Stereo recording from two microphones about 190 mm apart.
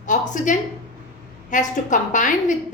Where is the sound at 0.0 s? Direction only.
40° left (ahead or behind).